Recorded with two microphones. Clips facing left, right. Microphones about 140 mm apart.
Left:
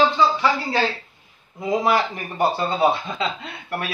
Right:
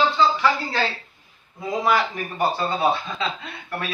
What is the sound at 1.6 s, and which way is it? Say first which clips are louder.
Speech: left 2 dB; 20° left (ahead or behind).